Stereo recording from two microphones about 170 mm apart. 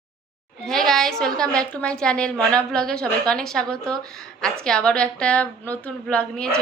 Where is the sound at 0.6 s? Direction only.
Centre (ahead or behind).